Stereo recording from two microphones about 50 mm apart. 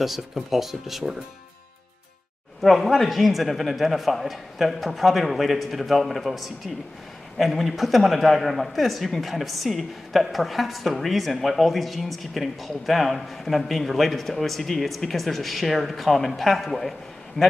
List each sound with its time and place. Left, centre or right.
0.0 s a man's voice: centre
2.6 s a man's voice: centre
17.4 s a man's voice: left